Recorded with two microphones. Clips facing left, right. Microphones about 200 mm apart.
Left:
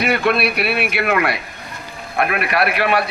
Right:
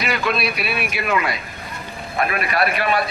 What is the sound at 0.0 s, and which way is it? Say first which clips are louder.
A man's voice: left 5 dB; 60° left (ahead or behind).